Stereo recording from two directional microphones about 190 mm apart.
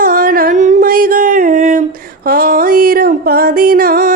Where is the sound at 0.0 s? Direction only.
50° right (ahead or behind).